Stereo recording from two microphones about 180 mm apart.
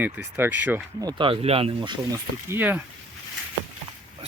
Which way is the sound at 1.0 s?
30° right (ahead or behind).